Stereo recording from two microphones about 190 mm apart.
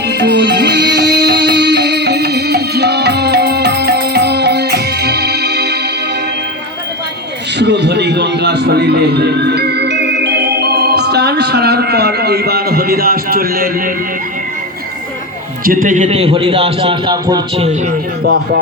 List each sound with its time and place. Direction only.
0.1 s music: 65° right (ahead or behind)
7.6 s music: 65° right (ahead or behind)
15.6 s a man's voice: 45° right (ahead or behind); by 17.4 s 20° right (ahead or behind)
17.6 s speech: 35° right (ahead or behind)
18.2 s a man's voice: 60° right (ahead or behind)